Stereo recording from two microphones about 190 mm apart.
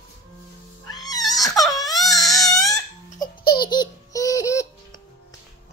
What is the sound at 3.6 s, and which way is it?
Baby laughter, 20° left (ahead or behind).